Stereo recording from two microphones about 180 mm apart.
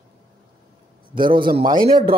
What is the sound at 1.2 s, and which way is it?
Speech, 55° right (ahead or behind).